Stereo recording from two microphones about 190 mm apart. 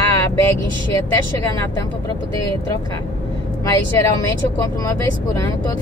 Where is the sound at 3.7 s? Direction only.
15° left (ahead or behind).